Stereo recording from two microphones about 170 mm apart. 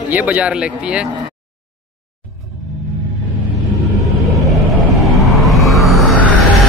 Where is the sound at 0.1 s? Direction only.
10° right (ahead or behind).